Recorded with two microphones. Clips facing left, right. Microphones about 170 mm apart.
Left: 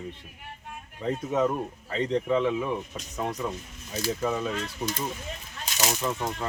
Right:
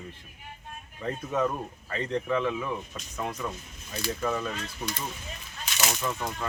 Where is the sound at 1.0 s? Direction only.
15° left (ahead or behind).